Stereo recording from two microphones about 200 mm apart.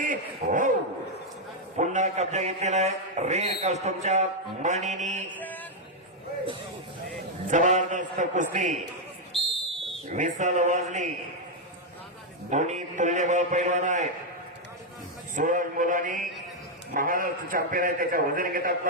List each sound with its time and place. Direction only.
0.0 s speech: 40° right (ahead or behind)
1.7 s a man's voice: 35° right (ahead or behind)
7.5 s a man's voice: 40° right (ahead or behind)
9.3 s whistle: centre (ahead or behind)
10.1 s a man's voice: 35° right (ahead or behind)
12.5 s a man's voice: 35° right (ahead or behind)
15.4 s a man's voice: 40° right (ahead or behind)